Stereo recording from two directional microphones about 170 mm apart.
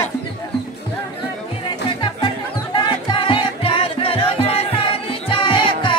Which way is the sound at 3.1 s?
30° left (ahead or behind).